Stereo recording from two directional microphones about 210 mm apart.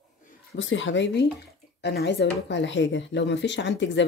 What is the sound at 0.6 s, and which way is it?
Speech, 60° left (ahead or behind).